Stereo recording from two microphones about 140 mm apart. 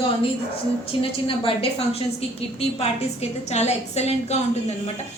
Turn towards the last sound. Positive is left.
turn(degrees=50)  # may be behind; listen again after turning